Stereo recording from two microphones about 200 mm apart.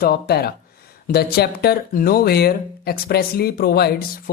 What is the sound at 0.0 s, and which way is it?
Speech, 50° left (ahead or behind).